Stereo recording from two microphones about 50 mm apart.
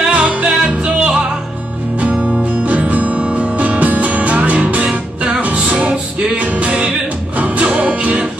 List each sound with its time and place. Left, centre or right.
0.1 s music: right
2.5 s music: right